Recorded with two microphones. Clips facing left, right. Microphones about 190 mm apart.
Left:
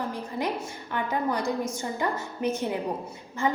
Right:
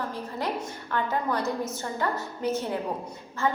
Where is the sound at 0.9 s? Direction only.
15° left (ahead or behind).